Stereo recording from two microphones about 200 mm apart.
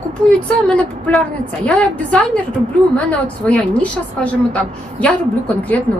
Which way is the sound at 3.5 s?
5° left (ahead or behind).